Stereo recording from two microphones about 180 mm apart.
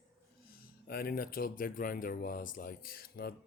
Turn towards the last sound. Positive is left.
turn(degrees=55)  # may be behind; listen again after turning